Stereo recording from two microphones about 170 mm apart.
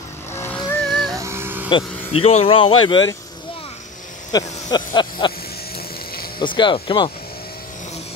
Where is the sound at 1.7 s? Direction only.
30° left (ahead or behind).